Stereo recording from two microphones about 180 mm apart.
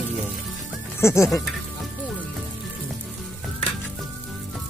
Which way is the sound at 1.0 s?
15° left (ahead or behind).